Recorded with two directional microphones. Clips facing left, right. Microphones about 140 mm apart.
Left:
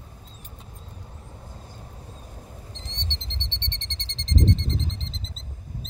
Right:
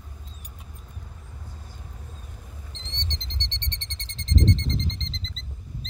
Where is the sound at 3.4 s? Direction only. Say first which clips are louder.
Even; centre (ahead or behind).